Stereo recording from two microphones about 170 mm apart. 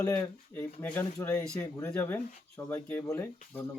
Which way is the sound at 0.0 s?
15° left (ahead or behind).